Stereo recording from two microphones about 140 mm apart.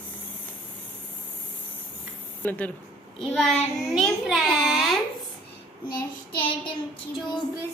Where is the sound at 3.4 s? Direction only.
Centre (ahead or behind).